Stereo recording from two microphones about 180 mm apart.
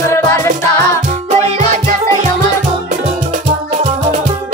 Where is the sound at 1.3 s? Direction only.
40° right (ahead or behind).